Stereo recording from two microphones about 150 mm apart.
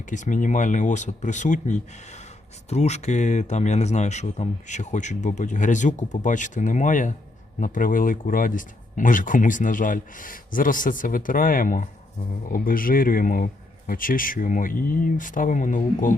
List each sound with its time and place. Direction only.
0.0 s speech: 60° left (ahead or behind)